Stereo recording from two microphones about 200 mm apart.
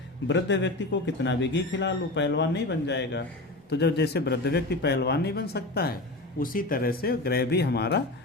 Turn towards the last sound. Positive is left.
turn(degrees=55)  # may be behind; listen again after turning